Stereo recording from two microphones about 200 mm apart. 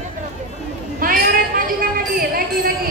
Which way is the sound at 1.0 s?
45° right (ahead or behind).